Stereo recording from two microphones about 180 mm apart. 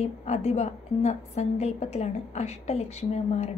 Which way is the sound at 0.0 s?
35° left (ahead or behind).